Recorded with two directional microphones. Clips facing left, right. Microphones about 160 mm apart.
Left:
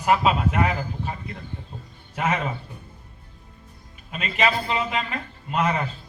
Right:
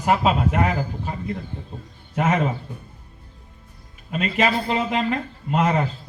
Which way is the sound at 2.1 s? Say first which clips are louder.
Right 4 dB; 45° right (ahead or behind).